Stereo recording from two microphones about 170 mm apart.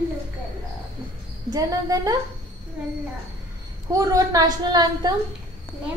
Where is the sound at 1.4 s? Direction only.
20° right (ahead or behind).